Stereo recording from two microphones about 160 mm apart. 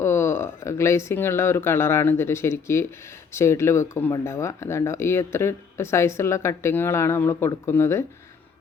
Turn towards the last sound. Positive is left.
turn(degrees=15)  # may be behind; listen again after turning